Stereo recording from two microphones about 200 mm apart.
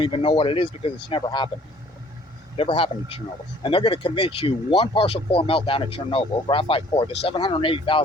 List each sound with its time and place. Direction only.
0.0 s speech: 25° left (ahead or behind)
2.6 s speech: 25° left (ahead or behind)